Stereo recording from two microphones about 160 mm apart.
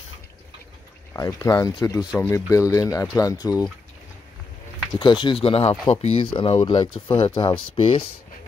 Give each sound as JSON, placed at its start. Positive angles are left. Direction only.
{"t": 1.1, "sound": "speech", "side_deg": 20}
{"t": 4.9, "sound": "speech", "side_deg": 30}